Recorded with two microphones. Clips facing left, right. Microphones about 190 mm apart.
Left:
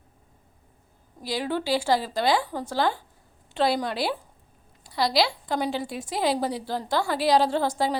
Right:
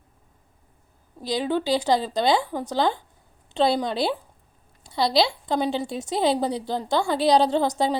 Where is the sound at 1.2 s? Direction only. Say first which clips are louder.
Right 3 dB; 20° right (ahead or behind).